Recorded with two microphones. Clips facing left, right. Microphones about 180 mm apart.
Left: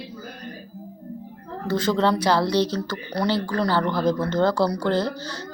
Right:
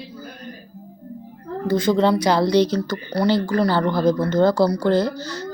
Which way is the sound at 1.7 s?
15° right (ahead or behind).